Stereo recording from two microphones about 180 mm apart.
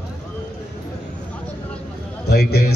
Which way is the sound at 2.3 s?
60° left (ahead or behind).